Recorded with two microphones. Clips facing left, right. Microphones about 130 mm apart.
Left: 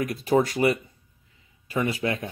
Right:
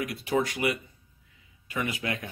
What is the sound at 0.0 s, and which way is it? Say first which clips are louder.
Speech: left 5 dB; 40° left (ahead or behind).